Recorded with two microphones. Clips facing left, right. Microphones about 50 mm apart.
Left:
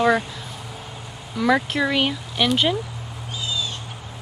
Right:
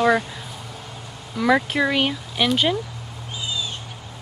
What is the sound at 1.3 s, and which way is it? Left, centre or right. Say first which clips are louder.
Speech: right 1 dB; centre.